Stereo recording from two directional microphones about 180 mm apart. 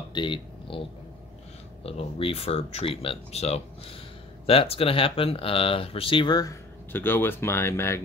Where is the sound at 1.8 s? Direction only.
30° left (ahead or behind).